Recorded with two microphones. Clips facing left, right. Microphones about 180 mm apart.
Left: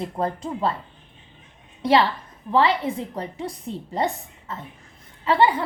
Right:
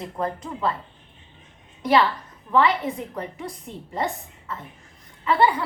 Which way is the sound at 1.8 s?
30° left (ahead or behind).